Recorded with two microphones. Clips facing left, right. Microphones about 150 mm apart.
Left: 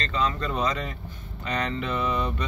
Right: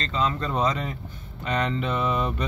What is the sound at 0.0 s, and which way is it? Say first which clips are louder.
Speech: right 1 dB; 30° right (ahead or behind).